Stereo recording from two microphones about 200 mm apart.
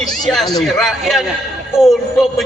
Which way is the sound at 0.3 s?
Centre (ahead or behind).